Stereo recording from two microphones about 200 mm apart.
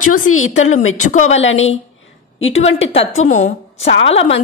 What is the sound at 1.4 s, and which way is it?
Speech, 75° left (ahead or behind).